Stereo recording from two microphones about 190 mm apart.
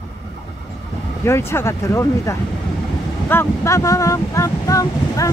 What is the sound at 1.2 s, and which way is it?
Speech, 15° left (ahead or behind).